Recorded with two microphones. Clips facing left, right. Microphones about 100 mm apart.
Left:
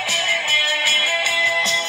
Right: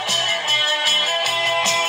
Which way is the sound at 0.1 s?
30° right (ahead or behind).